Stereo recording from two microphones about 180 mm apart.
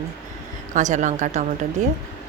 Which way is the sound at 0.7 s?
45° right (ahead or behind).